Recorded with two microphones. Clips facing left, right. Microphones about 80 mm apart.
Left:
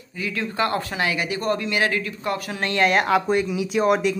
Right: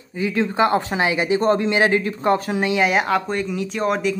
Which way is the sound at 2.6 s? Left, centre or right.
Centre.